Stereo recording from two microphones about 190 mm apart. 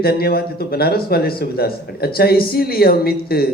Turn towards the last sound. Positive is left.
turn(degrees=55)  # may be behind; listen again after turning